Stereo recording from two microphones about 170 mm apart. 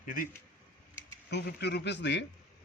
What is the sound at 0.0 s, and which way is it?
Speech, 50° left (ahead or behind).